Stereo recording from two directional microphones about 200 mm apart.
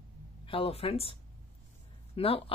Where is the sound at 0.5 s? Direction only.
30° left (ahead or behind).